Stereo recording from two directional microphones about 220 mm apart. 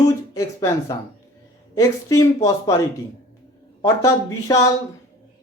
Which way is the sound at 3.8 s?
15° left (ahead or behind).